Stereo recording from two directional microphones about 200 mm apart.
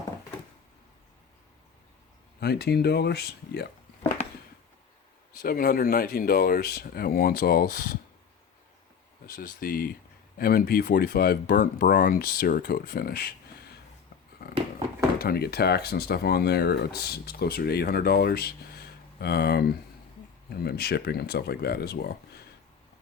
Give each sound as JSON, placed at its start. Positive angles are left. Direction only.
{"t": 2.4, "sound": "speech", "side_deg": 55}
{"t": 5.4, "sound": "speech", "side_deg": 50}
{"t": 9.2, "sound": "speech", "side_deg": 50}
{"t": 14.4, "sound": "a sound", "side_deg": 50}
{"t": 15.2, "sound": "speech", "side_deg": 50}